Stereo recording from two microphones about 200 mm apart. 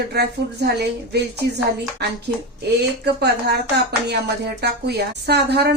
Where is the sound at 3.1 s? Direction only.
55° right (ahead or behind).